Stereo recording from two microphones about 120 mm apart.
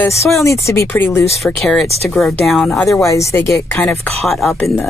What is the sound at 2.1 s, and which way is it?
Speech, 5° left (ahead or behind).